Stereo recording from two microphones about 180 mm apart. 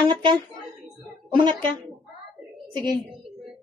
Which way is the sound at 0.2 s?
25° right (ahead or behind).